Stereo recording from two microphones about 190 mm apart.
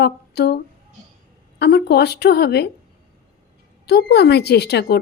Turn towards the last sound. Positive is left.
turn(degrees=60)  # may be behind; listen again after turning